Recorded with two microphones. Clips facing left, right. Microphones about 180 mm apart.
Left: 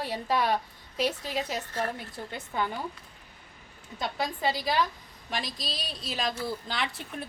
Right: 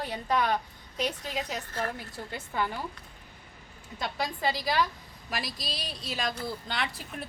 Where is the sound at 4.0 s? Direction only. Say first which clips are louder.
Left 1 dB; centre (ahead or behind).